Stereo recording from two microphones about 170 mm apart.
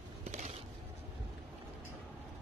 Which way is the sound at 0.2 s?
40° right (ahead or behind).